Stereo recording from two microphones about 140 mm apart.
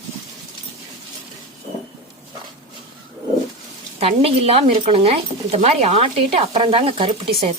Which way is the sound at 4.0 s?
45° right (ahead or behind).